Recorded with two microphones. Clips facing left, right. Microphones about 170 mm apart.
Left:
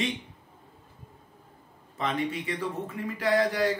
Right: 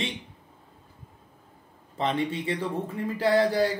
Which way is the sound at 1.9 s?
30° right (ahead or behind).